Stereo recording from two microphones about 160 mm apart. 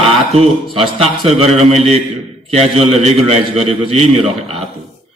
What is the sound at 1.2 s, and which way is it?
A man's voice, 40° right (ahead or behind).